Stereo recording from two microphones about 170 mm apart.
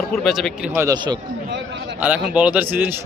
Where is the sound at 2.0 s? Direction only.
10° right (ahead or behind).